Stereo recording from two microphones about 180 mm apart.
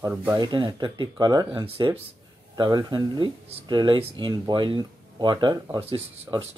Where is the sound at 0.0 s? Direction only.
15° right (ahead or behind).